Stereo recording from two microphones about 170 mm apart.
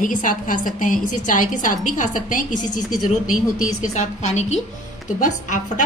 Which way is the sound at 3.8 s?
40° left (ahead or behind).